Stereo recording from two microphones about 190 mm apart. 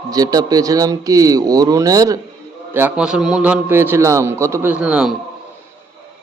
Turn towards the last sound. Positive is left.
turn(degrees=-5)  # may be behind; listen again after turning